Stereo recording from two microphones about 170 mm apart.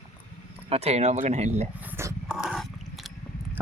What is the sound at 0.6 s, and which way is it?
Speech, 35° right (ahead or behind).